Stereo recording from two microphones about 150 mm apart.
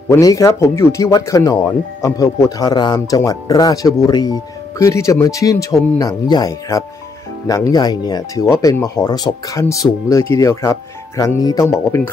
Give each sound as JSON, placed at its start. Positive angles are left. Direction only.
{"t": 0.1, "sound": "speech", "side_deg": 20}